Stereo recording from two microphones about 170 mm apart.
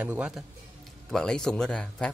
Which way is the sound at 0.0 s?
5° right (ahead or behind).